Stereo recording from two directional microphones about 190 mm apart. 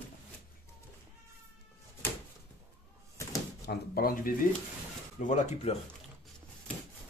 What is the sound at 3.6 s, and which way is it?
Speech, 55° left (ahead or behind).